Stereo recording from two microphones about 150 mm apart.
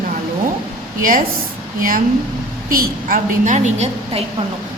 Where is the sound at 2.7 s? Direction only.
65° right (ahead or behind); by 4.2 s 50° right (ahead or behind).